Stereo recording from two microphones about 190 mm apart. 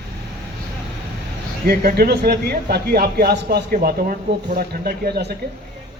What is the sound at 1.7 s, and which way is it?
Speech, 55° right (ahead or behind).